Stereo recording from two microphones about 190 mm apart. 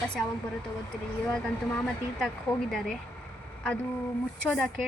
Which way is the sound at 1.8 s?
5° left (ahead or behind).